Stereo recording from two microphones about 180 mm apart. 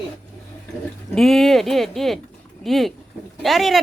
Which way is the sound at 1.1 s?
Centre (ahead or behind).